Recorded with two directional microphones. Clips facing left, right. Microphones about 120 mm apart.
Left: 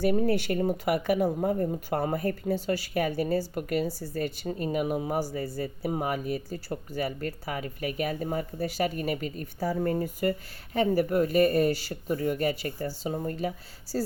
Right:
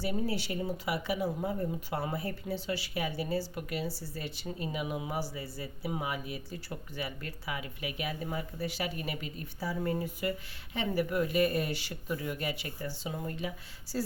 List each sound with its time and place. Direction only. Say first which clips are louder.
0.0 s speech: left 8 dB; 50° left (ahead or behind)